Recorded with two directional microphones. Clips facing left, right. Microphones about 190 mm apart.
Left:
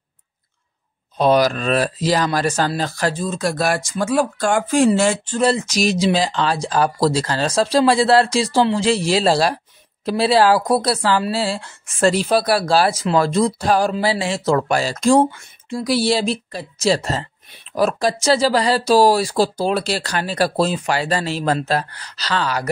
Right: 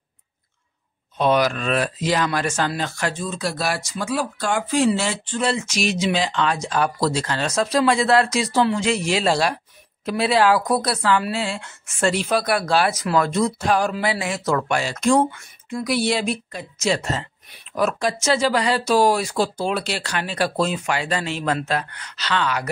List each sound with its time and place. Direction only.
1.1 s speech: 35° left (ahead or behind)